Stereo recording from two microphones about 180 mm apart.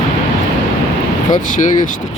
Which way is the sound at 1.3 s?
45° left (ahead or behind).